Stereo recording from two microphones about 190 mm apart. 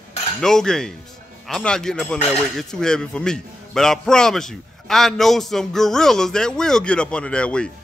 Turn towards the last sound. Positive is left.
turn(degrees=5)  # may be behind; listen again after turning